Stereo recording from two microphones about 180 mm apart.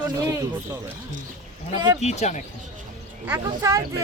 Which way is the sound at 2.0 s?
40° left (ahead or behind).